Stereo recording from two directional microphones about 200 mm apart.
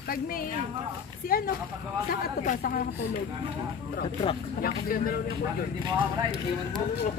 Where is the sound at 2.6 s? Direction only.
45° left (ahead or behind).